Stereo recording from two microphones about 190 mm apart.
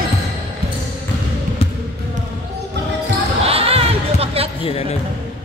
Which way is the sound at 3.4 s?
30° right (ahead or behind).